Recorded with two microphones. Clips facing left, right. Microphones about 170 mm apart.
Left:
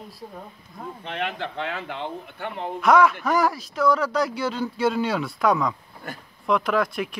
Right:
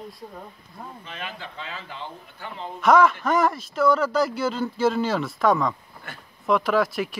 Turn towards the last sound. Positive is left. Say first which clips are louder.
# right 1 dB
turn(degrees=0)  # may be behind; listen again after turning